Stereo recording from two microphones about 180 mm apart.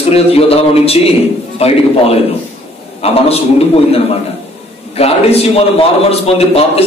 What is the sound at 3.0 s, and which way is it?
A man's voice, 35° left (ahead or behind).